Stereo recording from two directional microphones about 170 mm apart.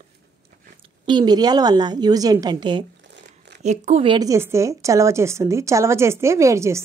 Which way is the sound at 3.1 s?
80° right.